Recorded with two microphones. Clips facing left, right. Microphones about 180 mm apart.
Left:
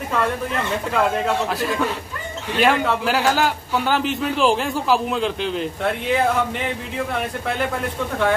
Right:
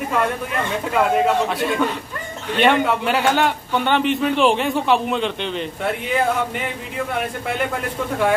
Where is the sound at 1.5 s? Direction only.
Centre (ahead or behind).